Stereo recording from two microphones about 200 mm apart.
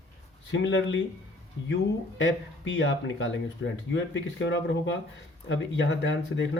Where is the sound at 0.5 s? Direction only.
60° left (ahead or behind).